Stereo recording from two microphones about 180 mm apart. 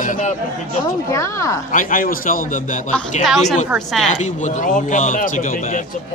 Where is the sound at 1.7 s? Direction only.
45° left (ahead or behind).